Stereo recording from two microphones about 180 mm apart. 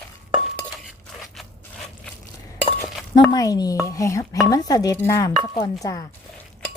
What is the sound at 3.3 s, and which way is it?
Speech, 20° left (ahead or behind).